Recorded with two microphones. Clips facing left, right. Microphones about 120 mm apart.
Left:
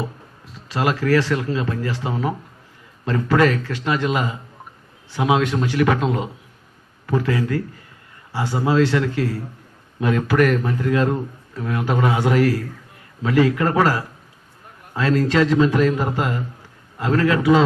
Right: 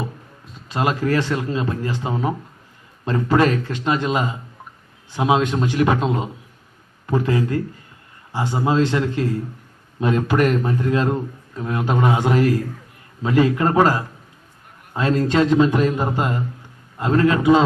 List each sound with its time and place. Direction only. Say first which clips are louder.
0.7 s a man's voice: left 1 dB; 20° right (ahead or behind)